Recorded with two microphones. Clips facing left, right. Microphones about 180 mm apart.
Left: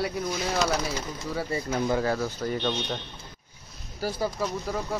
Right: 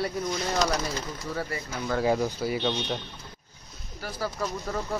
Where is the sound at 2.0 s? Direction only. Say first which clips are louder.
Right 2 dB; 15° right (ahead or behind).